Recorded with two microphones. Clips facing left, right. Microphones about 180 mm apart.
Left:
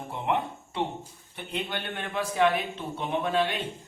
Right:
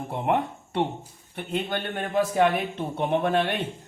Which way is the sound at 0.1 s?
55° right (ahead or behind).